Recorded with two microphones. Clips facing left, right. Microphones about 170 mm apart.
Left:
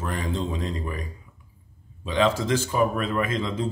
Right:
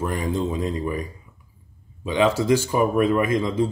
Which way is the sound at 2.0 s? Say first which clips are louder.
Right 3 dB; 10° right (ahead or behind).